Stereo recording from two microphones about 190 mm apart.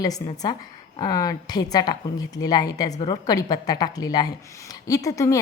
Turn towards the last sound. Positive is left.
turn(degrees=15)  # may be behind; listen again after turning